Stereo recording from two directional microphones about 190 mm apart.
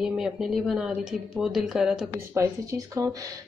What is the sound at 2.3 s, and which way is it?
Speech, 20° right (ahead or behind).